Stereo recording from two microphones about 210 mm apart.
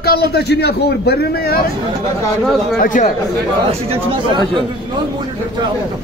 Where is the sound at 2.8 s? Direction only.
35° left (ahead or behind).